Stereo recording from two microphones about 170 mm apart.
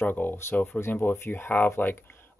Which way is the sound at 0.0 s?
10° left (ahead or behind).